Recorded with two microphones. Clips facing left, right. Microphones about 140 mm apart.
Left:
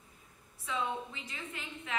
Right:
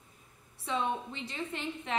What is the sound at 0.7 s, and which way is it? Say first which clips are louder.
A woman's voice: right 3 dB; 30° right (ahead or behind).